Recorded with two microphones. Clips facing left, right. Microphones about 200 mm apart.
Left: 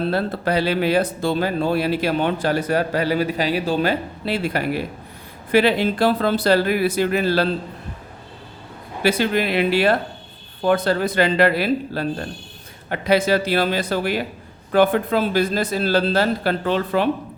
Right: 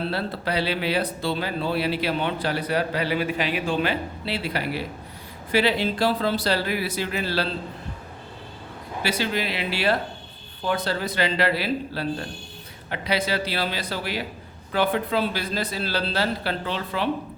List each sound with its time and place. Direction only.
0.1 s speech: 50° left (ahead or behind)
9.0 s speech: 55° left (ahead or behind)